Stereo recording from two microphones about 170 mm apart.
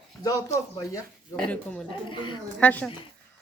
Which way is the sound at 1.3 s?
5° left (ahead or behind).